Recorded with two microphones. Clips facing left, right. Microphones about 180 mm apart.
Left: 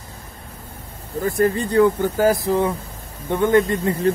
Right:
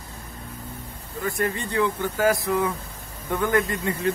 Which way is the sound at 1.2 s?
35° left (ahead or behind).